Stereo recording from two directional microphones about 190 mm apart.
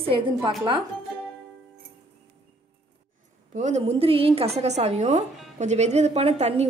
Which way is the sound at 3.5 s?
35° right (ahead or behind).